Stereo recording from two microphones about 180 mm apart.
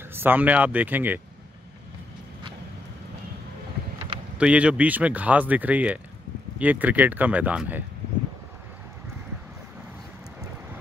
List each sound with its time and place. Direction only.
0.1 s speech: 10° right (ahead or behind)
4.4 s speech: 5° right (ahead or behind)